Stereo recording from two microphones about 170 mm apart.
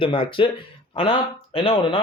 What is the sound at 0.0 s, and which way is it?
Speech, 30° left (ahead or behind).